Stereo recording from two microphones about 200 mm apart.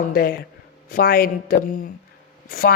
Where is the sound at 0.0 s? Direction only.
45° left (ahead or behind).